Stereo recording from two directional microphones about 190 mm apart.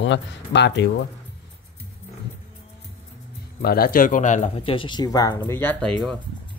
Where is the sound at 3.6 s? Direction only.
50° left (ahead or behind).